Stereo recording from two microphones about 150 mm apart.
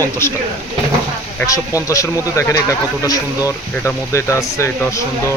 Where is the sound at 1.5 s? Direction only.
20° left (ahead or behind).